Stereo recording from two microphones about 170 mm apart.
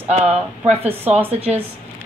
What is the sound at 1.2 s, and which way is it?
Speech, 35° right (ahead or behind).